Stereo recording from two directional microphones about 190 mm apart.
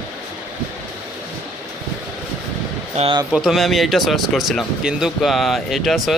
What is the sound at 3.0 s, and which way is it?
Speech, 25° right (ahead or behind).